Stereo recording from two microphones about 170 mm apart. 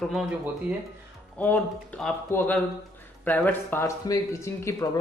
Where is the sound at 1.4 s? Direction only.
10° left (ahead or behind).